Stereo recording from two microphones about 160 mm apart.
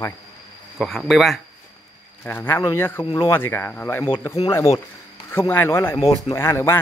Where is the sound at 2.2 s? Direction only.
15° left (ahead or behind).